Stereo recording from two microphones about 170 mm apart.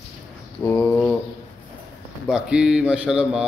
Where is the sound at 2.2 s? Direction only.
5° right (ahead or behind).